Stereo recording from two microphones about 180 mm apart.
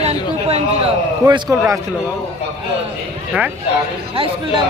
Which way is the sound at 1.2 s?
15° right (ahead or behind).